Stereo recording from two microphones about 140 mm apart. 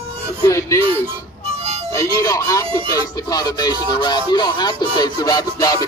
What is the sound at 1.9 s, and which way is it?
Speech, 25° left (ahead or behind).